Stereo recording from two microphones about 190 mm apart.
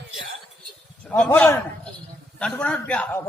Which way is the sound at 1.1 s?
5° left (ahead or behind).